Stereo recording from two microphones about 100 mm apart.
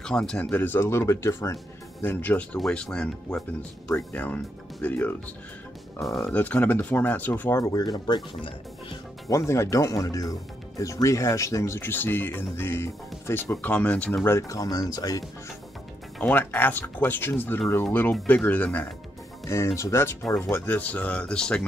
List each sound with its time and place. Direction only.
0.0 s speech: 5° left (ahead or behind)
5.9 s speech: centre (ahead or behind)
6.3 s speech: 15° left (ahead or behind)
7.7 s speech: 40° left (ahead or behind)
9.3 s speech: 30° left (ahead or behind); by 14.2 s 10° left (ahead or behind)
14.2 s speech: 30° left (ahead or behind)
16.2 s speech: 15° left (ahead or behind)
19.4 s speech: 25° left (ahead or behind); by 21.6 s 10° left (ahead or behind)